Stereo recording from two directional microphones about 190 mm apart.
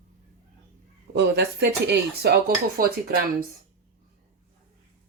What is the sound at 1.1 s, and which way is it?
Speech, 60° right (ahead or behind).